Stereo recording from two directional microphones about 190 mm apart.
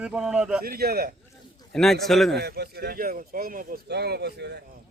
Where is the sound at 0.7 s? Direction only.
55° right (ahead or behind).